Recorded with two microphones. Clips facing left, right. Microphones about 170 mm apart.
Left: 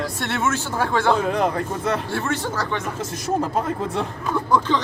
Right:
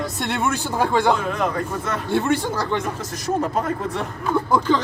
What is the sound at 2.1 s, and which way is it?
Speech, 15° right (ahead or behind).